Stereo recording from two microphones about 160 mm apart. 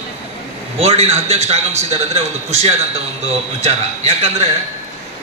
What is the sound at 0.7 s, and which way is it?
A man's voice, 40° right (ahead or behind).